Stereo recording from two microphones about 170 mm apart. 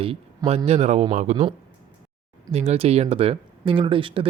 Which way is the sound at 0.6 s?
40° right (ahead or behind).